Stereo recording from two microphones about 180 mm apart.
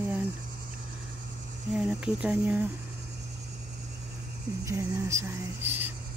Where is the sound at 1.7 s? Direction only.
5° right (ahead or behind).